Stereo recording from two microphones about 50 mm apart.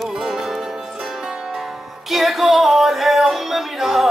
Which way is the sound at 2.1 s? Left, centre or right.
Centre.